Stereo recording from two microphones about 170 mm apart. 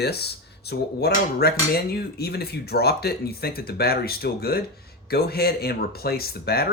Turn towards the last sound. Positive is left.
turn(degrees=65)  # may be behind; listen again after turning